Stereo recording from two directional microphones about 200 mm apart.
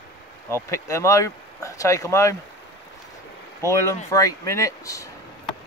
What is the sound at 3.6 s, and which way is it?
Speech, 15° left (ahead or behind).